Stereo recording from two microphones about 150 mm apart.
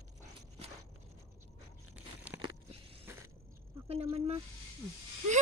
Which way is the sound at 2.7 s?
40° right (ahead or behind).